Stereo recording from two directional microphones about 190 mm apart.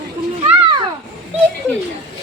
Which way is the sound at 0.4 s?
25° right (ahead or behind).